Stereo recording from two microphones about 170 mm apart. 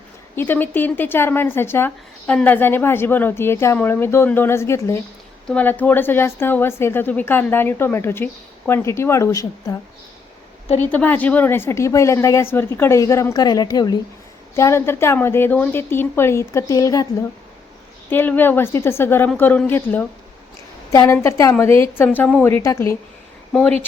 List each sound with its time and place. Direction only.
0.3 s a woman's voice: 10° left (ahead or behind)
10.8 s a woman's voice: 10° left (ahead or behind)
18.1 s a woman's voice: 10° left (ahead or behind)
23.5 s speech: centre (ahead or behind)